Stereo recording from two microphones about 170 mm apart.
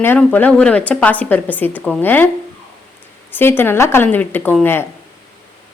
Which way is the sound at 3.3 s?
15° left (ahead or behind).